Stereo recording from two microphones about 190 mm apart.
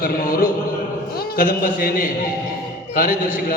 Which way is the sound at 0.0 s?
50° left (ahead or behind).